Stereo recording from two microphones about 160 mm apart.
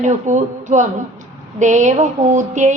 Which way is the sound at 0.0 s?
50° right (ahead or behind).